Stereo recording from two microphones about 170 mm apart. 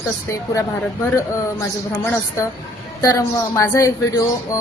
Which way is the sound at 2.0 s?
15° left (ahead or behind).